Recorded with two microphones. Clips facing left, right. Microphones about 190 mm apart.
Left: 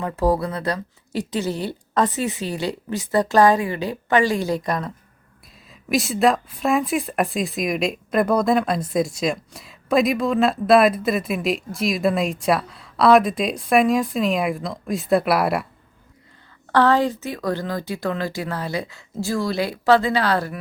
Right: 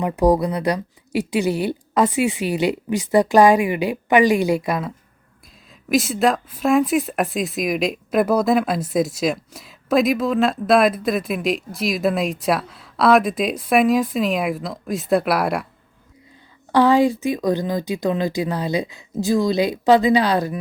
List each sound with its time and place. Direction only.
0.0 s a woman's voice: 15° right (ahead or behind)
5.9 s speech: centre (ahead or behind)
16.7 s a woman's voice: 10° right (ahead or behind)